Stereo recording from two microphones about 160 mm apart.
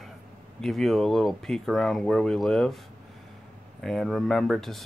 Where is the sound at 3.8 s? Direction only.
Centre (ahead or behind).